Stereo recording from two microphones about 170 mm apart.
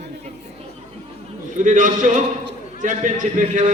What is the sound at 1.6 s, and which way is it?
A man's voice, 50° right (ahead or behind).